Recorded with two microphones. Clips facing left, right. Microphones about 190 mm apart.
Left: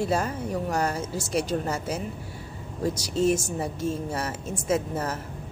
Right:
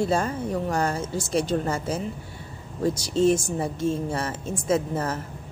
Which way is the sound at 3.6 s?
30° right (ahead or behind).